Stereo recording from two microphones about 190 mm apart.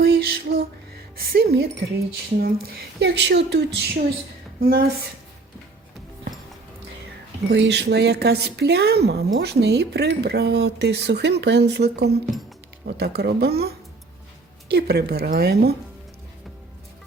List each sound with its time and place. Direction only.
0.0 s lullaby: 55° right (ahead or behind)
1.1 s speech: 55° right (ahead or behind)
7.5 s speech: 65° right (ahead or behind)